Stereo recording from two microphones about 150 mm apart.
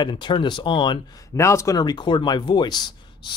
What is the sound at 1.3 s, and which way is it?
Speech, 20° left (ahead or behind).